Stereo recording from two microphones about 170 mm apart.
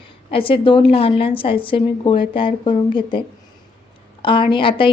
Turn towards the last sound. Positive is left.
turn(degrees=30)  # may be behind; listen again after turning